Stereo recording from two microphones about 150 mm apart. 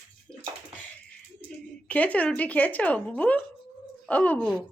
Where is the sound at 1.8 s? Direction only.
10° left (ahead or behind).